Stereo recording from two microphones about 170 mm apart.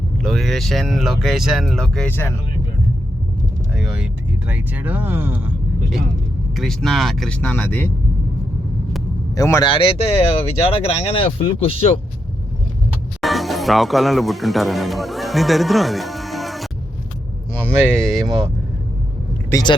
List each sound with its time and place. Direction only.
0.2 s speech: 5° left (ahead or behind)
3.8 s speech: 5° right (ahead or behind)
6.6 s speech: centre (ahead or behind)
9.3 s speech: 20° left (ahead or behind); by 11.9 s 35° left (ahead or behind)
13.2 s speech: centre (ahead or behind)
17.9 s speech: centre (ahead or behind)
19.5 s speech: 20° left (ahead or behind)